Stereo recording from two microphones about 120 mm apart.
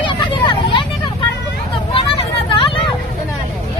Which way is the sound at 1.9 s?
45° left (ahead or behind).